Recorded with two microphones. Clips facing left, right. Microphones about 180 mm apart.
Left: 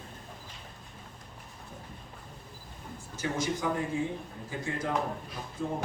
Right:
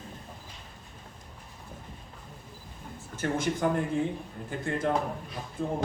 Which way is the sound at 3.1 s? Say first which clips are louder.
Right 3 dB; 55° right (ahead or behind).